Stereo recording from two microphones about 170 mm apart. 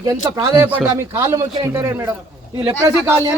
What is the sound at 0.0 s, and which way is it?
A man's voice, 20° right (ahead or behind).